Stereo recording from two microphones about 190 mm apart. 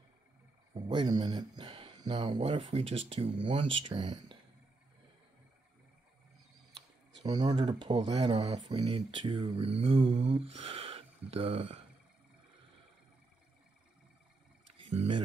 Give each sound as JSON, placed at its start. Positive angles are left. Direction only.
{"t": 0.7, "sound": "speech", "side_deg": -25}
{"t": 7.2, "sound": "speech", "side_deg": -20}
{"t": 14.8, "sound": "a sound", "side_deg": -30}